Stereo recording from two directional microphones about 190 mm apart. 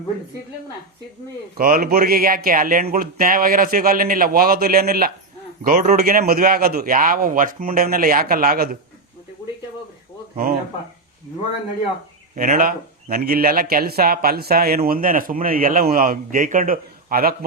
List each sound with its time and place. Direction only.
1.5 s a man's voice: 50° right (ahead or behind)
12.4 s a man's voice: 50° right (ahead or behind)